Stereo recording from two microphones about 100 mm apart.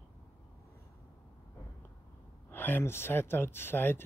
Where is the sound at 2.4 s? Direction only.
20° left (ahead or behind).